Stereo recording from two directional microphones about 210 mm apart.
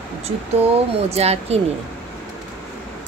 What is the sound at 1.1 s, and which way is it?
Speech, 30° right (ahead or behind).